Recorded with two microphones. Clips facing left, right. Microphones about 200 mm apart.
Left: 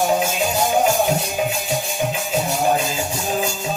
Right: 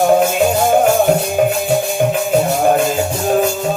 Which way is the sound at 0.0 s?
55° right (ahead or behind).